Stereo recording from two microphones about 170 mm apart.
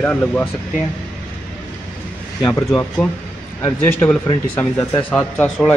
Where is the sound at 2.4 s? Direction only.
15° left (ahead or behind).